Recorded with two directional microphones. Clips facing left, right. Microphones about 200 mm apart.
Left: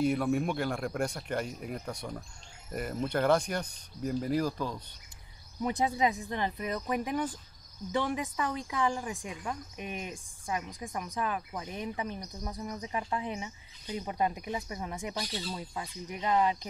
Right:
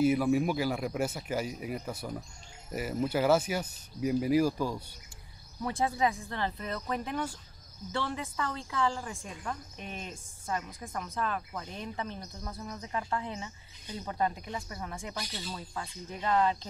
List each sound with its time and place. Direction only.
0.0 s a man's voice: 5° right (ahead or behind)
5.6 s speech: 20° left (ahead or behind)